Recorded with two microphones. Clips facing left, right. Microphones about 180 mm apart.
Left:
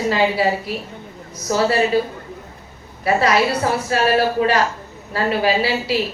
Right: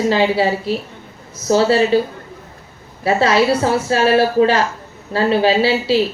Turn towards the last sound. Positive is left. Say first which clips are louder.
# right 4 dB
turn(degrees=-30)  # may be behind; listen again after turning